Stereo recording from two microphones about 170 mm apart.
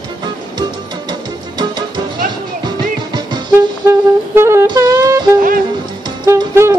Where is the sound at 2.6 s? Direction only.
25° right (ahead or behind).